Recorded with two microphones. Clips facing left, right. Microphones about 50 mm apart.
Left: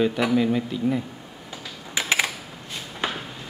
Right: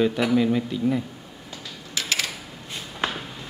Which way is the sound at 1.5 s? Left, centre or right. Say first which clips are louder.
Left 1 dB; centre.